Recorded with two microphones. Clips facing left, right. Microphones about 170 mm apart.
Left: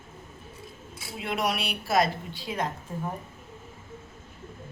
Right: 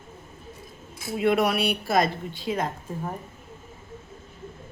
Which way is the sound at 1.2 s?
55° right (ahead or behind).